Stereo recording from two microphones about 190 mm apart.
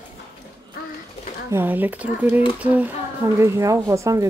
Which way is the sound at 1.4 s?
10° right (ahead or behind).